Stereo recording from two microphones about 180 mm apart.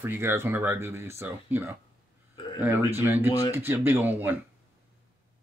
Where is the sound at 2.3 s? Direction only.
25° left (ahead or behind).